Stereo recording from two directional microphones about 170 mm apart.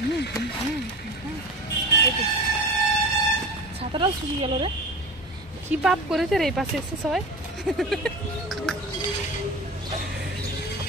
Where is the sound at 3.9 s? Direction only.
30° right (ahead or behind).